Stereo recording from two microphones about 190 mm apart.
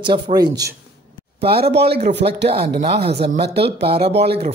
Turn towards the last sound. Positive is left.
turn(degrees=-60)  # may be behind; listen again after turning